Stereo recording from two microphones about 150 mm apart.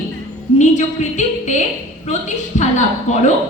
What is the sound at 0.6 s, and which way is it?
A woman's voice, 50° left (ahead or behind).